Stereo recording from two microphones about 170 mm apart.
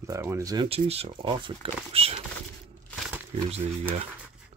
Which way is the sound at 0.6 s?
35° right (ahead or behind).